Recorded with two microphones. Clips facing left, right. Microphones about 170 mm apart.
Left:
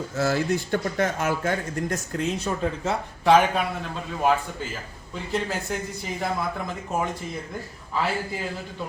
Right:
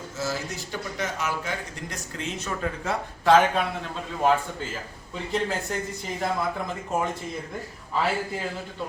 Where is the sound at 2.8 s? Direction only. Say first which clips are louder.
Even; 15° left (ahead or behind).